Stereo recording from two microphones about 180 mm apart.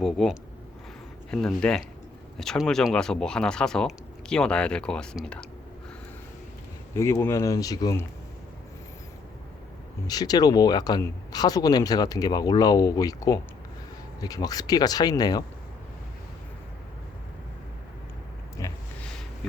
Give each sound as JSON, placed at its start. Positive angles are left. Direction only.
{"t": 0.0, "sound": "speech", "side_deg": 0}
{"t": 6.9, "sound": "speech", "side_deg": 15}
{"t": 10.1, "sound": "speech", "side_deg": 20}
{"t": 18.6, "sound": "a sound", "side_deg": 20}